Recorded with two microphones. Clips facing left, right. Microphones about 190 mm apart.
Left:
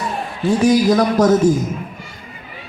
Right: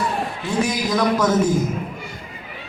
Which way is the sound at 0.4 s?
40° left (ahead or behind).